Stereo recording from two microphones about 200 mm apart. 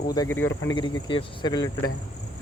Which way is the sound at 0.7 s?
25° left (ahead or behind).